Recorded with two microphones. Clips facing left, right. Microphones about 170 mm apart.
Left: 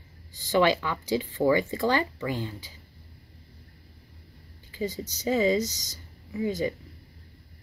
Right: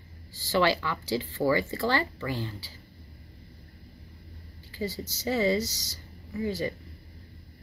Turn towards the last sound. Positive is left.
turn(degrees=20)  # may be behind; listen again after turning